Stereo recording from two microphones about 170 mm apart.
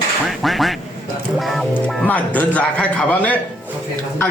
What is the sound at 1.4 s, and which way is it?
Speech, centre (ahead or behind).